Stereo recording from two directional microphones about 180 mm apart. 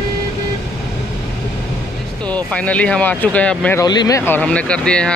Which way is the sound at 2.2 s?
10° left (ahead or behind).